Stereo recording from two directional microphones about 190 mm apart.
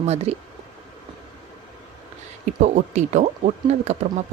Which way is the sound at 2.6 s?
35° right (ahead or behind).